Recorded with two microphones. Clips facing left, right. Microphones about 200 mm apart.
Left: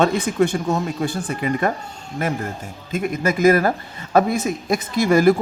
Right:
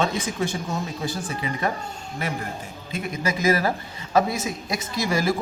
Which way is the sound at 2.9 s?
55° left (ahead or behind).